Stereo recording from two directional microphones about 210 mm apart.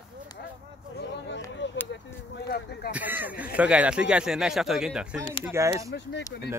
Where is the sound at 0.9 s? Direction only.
55° left (ahead or behind).